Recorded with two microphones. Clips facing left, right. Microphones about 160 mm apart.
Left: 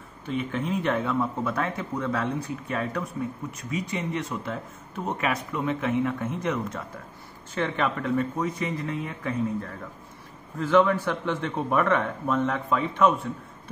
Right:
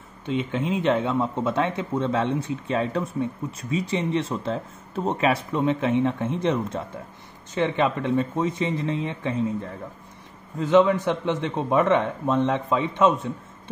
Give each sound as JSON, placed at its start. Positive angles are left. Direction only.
{"t": 0.4, "sound": "speech", "side_deg": -20}